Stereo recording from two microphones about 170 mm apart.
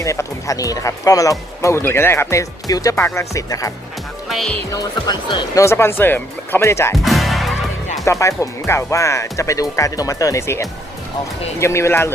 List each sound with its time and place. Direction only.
0.0 s speech: 20° left (ahead or behind)
4.3 s speech: centre (ahead or behind)
4.7 s speech: 25° left (ahead or behind)
5.6 s speech: 15° left (ahead or behind)
6.9 s music: centre (ahead or behind)
8.0 s speech: 15° left (ahead or behind)